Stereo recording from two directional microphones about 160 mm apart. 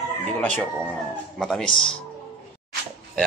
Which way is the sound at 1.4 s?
Centre (ahead or behind).